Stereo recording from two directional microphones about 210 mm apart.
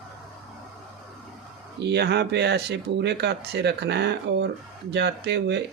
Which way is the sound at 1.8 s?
50° right (ahead or behind).